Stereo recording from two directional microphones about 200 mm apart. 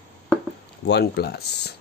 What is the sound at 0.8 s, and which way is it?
Speech, 55° left (ahead or behind).